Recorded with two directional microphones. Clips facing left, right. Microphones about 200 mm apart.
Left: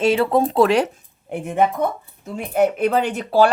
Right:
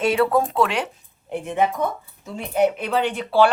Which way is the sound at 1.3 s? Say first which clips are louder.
Left 2 dB; 50° left (ahead or behind).